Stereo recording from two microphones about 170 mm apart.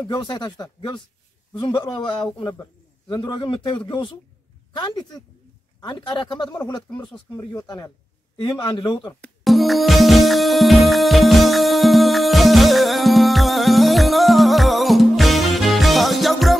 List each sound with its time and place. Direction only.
0.0 s speech: 25° left (ahead or behind)
9.2 s music: centre (ahead or behind)